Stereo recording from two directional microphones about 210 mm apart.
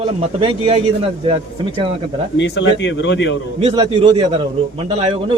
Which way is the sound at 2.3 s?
55° left (ahead or behind).